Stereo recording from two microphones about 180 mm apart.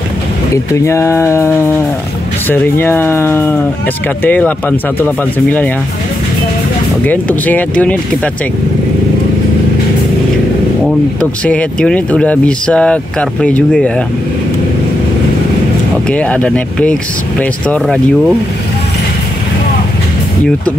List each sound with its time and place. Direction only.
0.8 s speech: 15° left (ahead or behind)
7.1 s speech: 10° left (ahead or behind)
11.1 s speech: 5° left (ahead or behind)
16.1 s speech: 5° left (ahead or behind)